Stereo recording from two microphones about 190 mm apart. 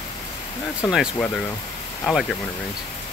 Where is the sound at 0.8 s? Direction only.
Centre (ahead or behind).